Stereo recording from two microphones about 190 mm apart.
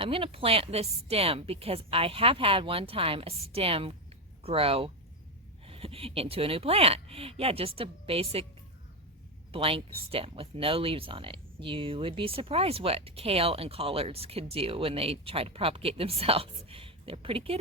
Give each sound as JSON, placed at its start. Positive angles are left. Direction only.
{"t": 0.0, "sound": "speech", "side_deg": -30}
{"t": 9.5, "sound": "speech", "side_deg": -30}